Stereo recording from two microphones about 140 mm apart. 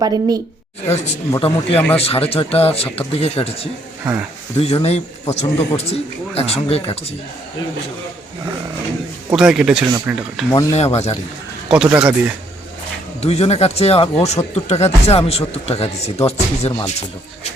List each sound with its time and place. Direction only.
0.0 s a woman's voice: 25° right (ahead or behind)
0.9 s speech: 50° left (ahead or behind)
9.3 s a man's voice: 5° right (ahead or behind)
10.5 s speech: 20° left (ahead or behind)
10.8 s speech: 50° left (ahead or behind)
11.7 s speech: 5° right (ahead or behind)
13.2 s speech: 50° left (ahead or behind)